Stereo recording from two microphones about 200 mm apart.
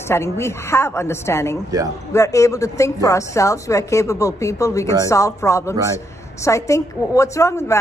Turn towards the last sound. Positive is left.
turn(degrees=15)  # may be behind; listen again after turning